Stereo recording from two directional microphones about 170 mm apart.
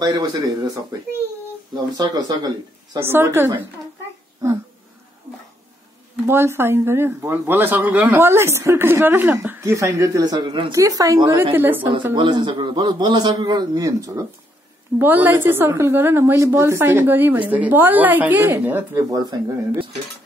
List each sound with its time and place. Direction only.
0.0 s a man's voice: 20° right (ahead or behind)
6.2 s speech: 15° right (ahead or behind)
12.2 s a man's voice: 30° right (ahead or behind)